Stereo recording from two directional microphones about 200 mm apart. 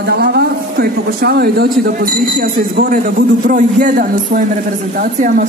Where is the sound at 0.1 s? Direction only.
55° right (ahead or behind).